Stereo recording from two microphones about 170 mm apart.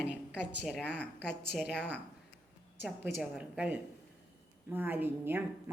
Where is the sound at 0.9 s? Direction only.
5° left (ahead or behind).